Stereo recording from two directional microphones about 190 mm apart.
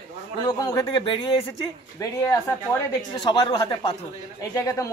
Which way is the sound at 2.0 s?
15° left (ahead or behind).